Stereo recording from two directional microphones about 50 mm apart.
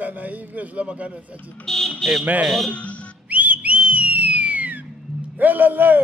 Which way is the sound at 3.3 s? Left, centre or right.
Right.